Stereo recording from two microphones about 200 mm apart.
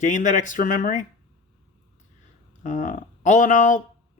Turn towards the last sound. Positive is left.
turn(degrees=40)  # may be behind; listen again after turning